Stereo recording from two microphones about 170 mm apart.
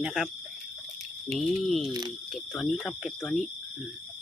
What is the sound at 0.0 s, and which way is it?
Speech, centre (ahead or behind).